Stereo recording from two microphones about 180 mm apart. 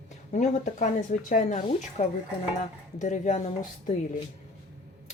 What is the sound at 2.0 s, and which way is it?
Speech, 40° left (ahead or behind).